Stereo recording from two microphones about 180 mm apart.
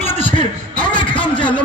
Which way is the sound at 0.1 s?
30° left (ahead or behind).